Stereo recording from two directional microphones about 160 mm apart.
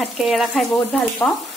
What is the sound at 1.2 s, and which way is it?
Speech, 15° left (ahead or behind).